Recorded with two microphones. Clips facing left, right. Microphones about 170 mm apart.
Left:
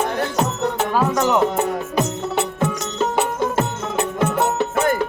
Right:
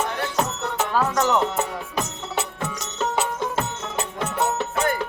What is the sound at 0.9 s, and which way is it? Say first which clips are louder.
Music: left 2 dB; 15° left (ahead or behind).